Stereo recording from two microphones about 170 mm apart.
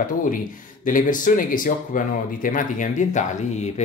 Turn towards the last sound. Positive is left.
turn(degrees=45)  # may be behind; listen again after turning